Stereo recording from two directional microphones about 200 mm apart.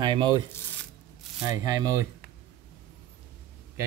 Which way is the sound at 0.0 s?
20° right (ahead or behind).